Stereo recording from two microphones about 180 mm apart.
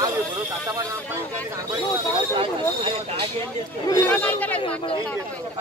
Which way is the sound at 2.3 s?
30° right (ahead or behind).